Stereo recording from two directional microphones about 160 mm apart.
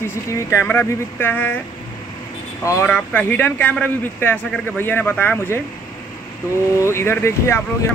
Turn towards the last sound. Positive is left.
turn(degrees=15)  # may be behind; listen again after turning